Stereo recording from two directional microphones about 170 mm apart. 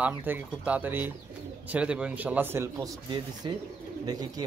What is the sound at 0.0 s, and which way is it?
Speech, 10° right (ahead or behind).